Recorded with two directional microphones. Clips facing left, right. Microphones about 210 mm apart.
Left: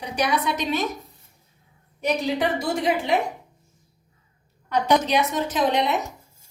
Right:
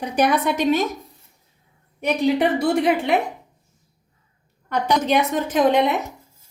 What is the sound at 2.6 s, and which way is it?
Speech, 60° right (ahead or behind).